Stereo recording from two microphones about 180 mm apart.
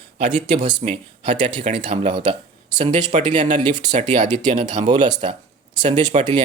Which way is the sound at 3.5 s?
25° right (ahead or behind).